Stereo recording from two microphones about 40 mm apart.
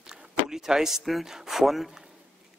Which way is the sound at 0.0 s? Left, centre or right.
Centre.